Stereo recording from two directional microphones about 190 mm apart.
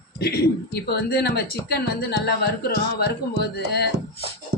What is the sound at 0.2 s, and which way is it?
Speech, 60° left (ahead or behind).